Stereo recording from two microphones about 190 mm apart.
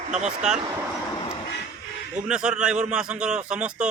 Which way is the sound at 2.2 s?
5° right (ahead or behind).